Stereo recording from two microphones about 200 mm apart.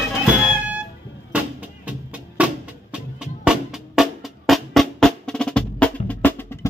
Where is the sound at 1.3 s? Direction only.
5° right (ahead or behind).